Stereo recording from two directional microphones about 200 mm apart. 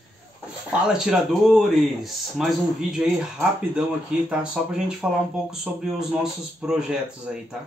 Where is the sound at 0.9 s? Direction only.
Centre (ahead or behind).